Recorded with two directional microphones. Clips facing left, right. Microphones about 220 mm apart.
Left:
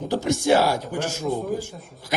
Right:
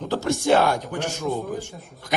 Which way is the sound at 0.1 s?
15° left (ahead or behind).